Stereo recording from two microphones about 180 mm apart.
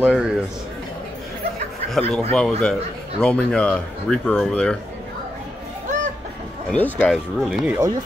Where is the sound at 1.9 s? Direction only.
5° left (ahead or behind).